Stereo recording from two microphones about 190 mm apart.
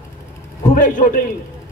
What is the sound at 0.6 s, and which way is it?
Speech, 45° left (ahead or behind).